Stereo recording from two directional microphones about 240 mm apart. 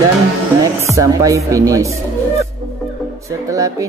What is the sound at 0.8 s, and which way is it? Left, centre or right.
Speech, centre.